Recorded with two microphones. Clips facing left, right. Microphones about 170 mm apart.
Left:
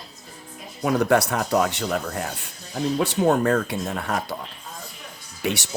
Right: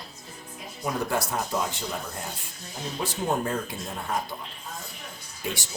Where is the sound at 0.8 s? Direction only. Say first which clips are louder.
Left 9 dB; 70° left (ahead or behind).